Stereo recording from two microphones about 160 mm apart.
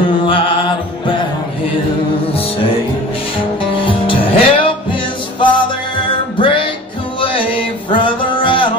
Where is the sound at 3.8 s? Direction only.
30° left (ahead or behind).